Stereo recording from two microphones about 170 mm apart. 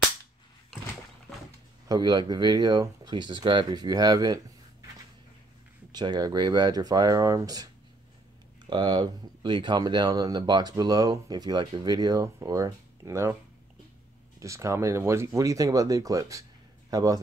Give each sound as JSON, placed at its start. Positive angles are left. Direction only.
{"t": 1.9, "sound": "speech", "side_deg": -25}
{"t": 5.9, "sound": "speech", "side_deg": -25}
{"t": 14.4, "sound": "speech", "side_deg": -15}